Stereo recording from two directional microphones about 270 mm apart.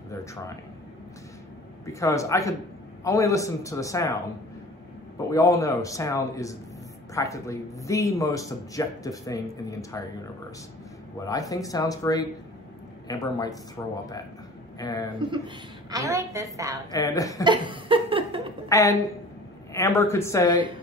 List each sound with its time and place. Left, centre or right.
1.9 s speech: centre
11.1 s speech: centre
15.1 s a woman's voice: centre
16.9 s speech: centre
17.4 s a sound: centre
18.7 s speech: centre